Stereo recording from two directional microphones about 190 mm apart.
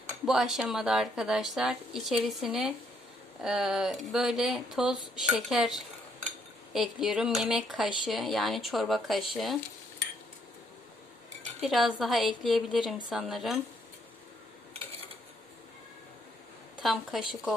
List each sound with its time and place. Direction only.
0.3 s speech: centre (ahead or behind)
11.6 s speech: centre (ahead or behind)
14.7 s a sound: 30° right (ahead or behind)
16.8 s speech: centre (ahead or behind)